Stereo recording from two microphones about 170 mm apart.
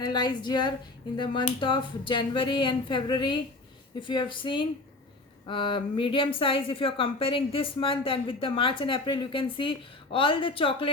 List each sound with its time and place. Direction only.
0.0 s speech: 25° left (ahead or behind)